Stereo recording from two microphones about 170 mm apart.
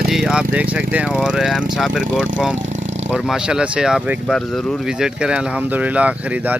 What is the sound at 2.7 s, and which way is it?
Vehicle, 45° right (ahead or behind).